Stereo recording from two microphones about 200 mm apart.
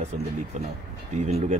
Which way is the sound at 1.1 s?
35° right (ahead or behind).